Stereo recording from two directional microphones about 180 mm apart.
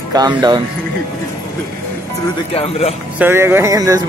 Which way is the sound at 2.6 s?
35° left (ahead or behind).